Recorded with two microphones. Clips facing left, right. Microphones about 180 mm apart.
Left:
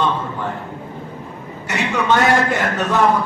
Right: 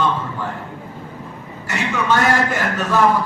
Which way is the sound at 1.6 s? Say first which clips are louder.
Left 2 dB; 20° left (ahead or behind).